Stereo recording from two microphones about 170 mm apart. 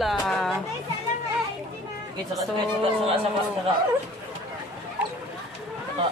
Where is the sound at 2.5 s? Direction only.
35° right (ahead or behind).